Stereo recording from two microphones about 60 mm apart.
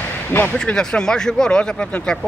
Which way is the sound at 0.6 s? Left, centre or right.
Centre.